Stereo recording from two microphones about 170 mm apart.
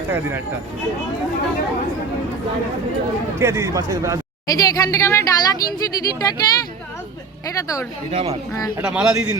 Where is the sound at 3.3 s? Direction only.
15° right (ahead or behind).